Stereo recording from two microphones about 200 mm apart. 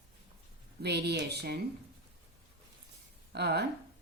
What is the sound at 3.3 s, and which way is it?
Speech, 55° right (ahead or behind).